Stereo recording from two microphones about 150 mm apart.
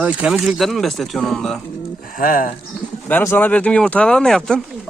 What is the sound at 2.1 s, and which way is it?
Speech, 65° left (ahead or behind).